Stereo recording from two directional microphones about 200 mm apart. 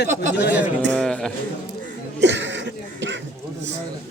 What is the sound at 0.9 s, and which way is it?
Speech, 5° left (ahead or behind).